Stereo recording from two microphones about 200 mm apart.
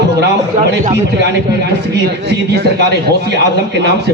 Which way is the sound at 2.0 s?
55° right (ahead or behind).